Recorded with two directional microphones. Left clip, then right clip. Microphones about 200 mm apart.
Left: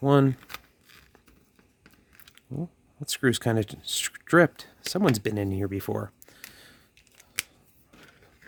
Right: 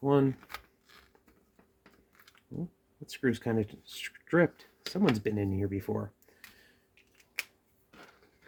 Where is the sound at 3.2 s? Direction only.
55° left (ahead or behind).